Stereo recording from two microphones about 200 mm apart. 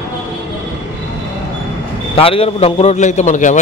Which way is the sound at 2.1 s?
30° left (ahead or behind).